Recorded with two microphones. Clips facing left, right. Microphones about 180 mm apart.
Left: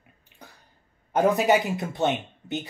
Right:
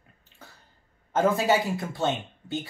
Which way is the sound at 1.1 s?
20° left (ahead or behind).